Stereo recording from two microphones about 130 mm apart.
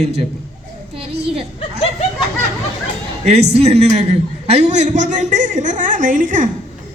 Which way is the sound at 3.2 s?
55° right (ahead or behind).